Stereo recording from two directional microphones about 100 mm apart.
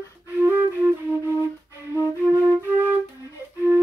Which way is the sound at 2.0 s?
20° right (ahead or behind).